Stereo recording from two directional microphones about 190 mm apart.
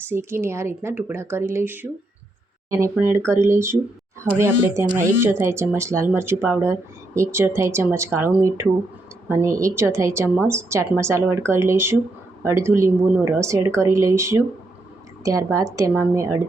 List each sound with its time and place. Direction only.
0.1 s a woman's voice: 10° right (ahead or behind)
3.2 s a woman's voice: 15° right (ahead or behind)